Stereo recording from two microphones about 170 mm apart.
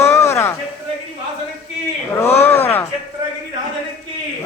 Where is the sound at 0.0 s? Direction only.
15° left (ahead or behind).